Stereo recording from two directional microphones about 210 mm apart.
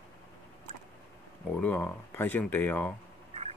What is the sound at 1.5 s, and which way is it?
Speech, 5° left (ahead or behind).